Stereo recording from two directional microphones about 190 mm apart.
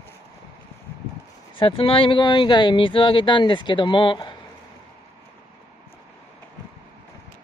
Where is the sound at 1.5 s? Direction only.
25° left (ahead or behind).